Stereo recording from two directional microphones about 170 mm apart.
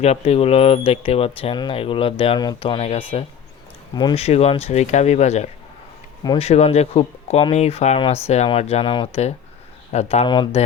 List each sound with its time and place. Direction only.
0.0 s speech: 40° left (ahead or behind)